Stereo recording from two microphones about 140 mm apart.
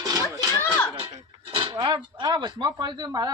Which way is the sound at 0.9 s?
50° right (ahead or behind).